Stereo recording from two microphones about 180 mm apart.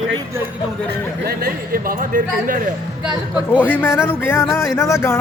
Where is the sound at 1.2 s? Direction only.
55° right (ahead or behind).